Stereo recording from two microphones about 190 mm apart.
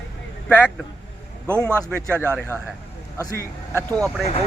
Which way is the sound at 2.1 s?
10° right (ahead or behind).